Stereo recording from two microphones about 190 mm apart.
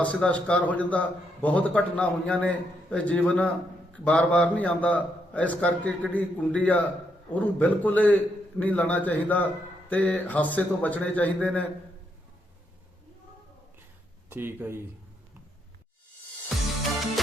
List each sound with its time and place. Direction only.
0.0 s a man's voice: 5° left (ahead or behind)
14.3 s speech: 10° right (ahead or behind)